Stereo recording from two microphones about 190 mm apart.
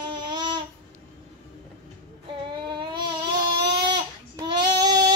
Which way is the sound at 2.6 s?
25° right (ahead or behind).